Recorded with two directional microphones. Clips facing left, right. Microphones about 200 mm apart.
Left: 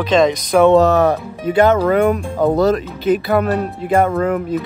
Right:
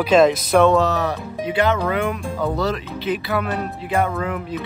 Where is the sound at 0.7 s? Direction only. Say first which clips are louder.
Left 7 dB; 50° left (ahead or behind).